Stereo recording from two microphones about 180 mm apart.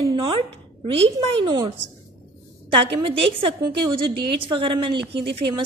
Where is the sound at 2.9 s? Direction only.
25° right (ahead or behind).